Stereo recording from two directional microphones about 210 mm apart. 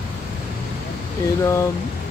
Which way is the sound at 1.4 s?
15° left (ahead or behind).